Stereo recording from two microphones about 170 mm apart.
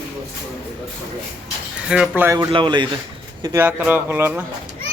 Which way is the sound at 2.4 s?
30° right (ahead or behind).